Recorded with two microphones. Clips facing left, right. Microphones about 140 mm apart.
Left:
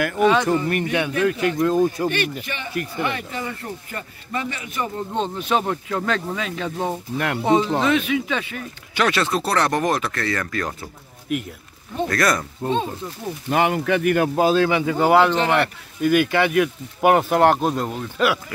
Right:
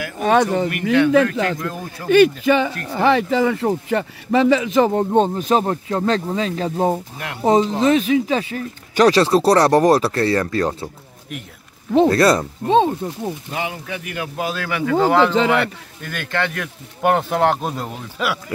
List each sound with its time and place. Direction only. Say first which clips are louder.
0.2 s speech: right 2 dB; 50° right (ahead or behind)
1.1 s speech: right 4 dB; 90° right
1.6 s speech: left 10 dB; 20° left (ahead or behind)
2.9 s speech: right 10 dB; 90° right
5.1 s speech: right 6 dB; 45° right (ahead or behind)
11.3 s speech: left 8 dB; 5° left (ahead or behind)
12.1 s speech: right 6 dB; 30° right (ahead or behind)
12.6 s speech: right 8 dB; 90° right
13.5 s speech: left 8 dB; 65° left (ahead or behind); by 14.4 s 50° left (ahead or behind)
14.4 s speech: left 4 dB; 25° left (ahead or behind)
15.0 s speech: right 2 dB; 10° left (ahead or behind)